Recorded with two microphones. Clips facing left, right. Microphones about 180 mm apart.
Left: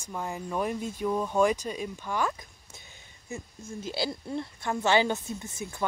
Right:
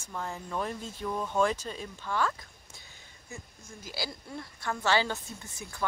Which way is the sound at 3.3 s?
25° left (ahead or behind).